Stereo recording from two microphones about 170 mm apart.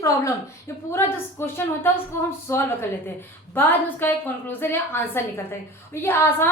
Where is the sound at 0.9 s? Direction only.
15° left (ahead or behind).